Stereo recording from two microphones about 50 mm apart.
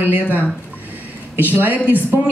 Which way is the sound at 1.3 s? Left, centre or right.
Right.